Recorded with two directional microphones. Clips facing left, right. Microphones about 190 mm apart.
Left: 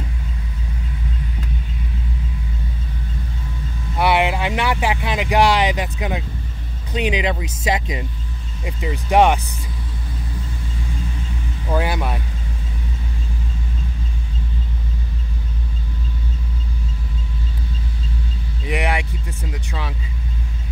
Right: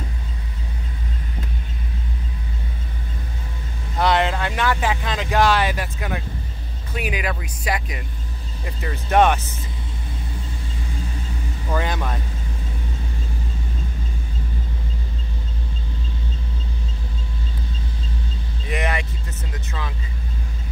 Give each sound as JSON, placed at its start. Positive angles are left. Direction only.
{"t": 4.0, "sound": "speech", "side_deg": 10}
{"t": 11.7, "sound": "speech", "side_deg": 10}
{"t": 18.7, "sound": "speech", "side_deg": 10}